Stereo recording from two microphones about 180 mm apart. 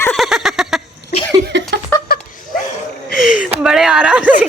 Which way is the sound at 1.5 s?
70° right (ahead or behind).